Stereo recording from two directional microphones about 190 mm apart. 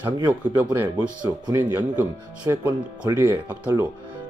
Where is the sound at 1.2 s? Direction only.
20° right (ahead or behind).